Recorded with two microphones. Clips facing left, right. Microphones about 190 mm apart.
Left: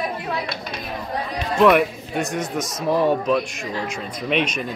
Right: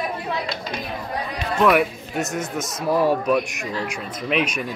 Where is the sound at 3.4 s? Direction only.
15° right (ahead or behind).